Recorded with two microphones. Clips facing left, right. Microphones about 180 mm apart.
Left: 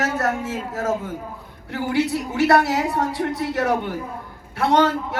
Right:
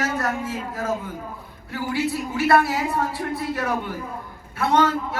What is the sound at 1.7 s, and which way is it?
Speech, 70° left (ahead or behind).